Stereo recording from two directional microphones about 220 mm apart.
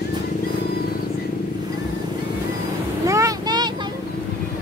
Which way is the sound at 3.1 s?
15° right (ahead or behind).